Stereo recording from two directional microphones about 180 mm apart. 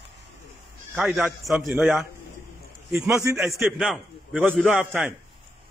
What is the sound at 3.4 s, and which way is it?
A man's voice, centre (ahead or behind).